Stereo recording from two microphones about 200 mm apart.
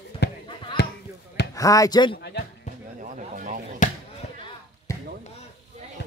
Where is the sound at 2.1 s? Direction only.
55° left (ahead or behind).